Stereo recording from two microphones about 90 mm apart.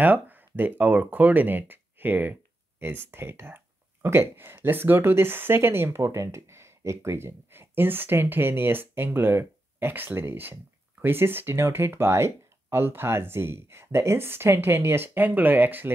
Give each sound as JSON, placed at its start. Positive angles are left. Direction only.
{"t": 0.0, "sound": "speech", "side_deg": -20}